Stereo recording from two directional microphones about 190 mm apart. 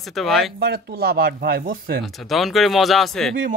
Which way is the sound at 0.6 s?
55° right (ahead or behind).